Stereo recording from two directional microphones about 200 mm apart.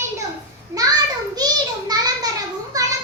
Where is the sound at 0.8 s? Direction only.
20° right (ahead or behind).